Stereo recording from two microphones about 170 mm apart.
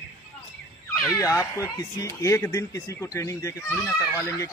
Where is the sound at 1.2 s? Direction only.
20° left (ahead or behind).